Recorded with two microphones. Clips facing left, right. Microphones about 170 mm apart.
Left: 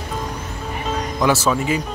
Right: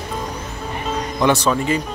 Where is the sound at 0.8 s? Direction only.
5° left (ahead or behind).